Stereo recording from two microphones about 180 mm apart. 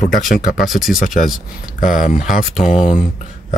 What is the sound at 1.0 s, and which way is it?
Speech, 50° left (ahead or behind).